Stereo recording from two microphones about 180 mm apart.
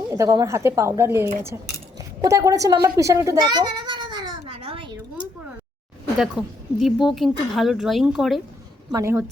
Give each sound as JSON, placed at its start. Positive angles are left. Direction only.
{"t": 0.1, "sound": "a woman's voice", "side_deg": -20}
{"t": 3.0, "sound": "a sound", "side_deg": -15}
{"t": 6.1, "sound": "speech", "side_deg": 0}
{"t": 8.9, "sound": "speech", "side_deg": -15}